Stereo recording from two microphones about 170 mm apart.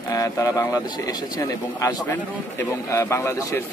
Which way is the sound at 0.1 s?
20° left (ahead or behind).